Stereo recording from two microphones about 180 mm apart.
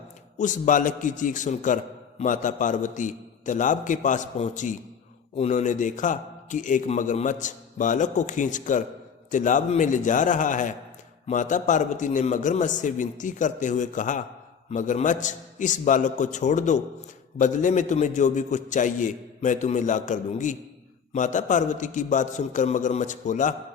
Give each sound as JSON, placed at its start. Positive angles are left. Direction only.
{"t": 0.3, "sound": "a man's voice", "side_deg": 45}